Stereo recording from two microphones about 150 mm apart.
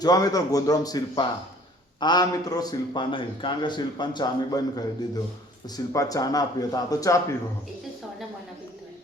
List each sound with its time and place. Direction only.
0.0 s a man's voice: 25° left (ahead or behind)